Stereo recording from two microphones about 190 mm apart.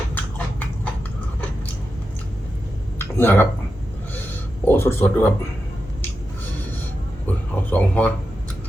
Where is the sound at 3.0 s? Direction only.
10° left (ahead or behind).